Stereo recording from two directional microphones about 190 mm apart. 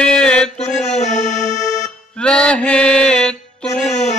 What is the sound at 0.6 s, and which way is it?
Music, 35° left (ahead or behind).